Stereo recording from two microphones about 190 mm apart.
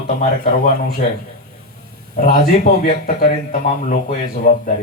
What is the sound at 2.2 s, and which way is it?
A man's voice, 50° left (ahead or behind).